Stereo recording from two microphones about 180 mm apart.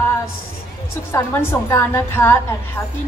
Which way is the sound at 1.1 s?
15° left (ahead or behind).